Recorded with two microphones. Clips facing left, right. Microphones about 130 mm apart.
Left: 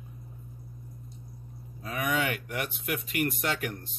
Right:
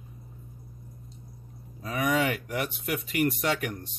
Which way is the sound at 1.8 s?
35° right (ahead or behind).